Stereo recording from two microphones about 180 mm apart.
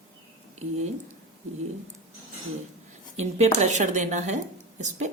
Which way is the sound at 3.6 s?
40° right (ahead or behind).